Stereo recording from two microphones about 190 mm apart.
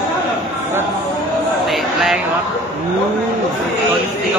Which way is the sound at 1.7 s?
Centre (ahead or behind).